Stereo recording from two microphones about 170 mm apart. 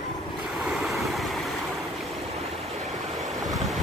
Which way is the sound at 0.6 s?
Centre (ahead or behind).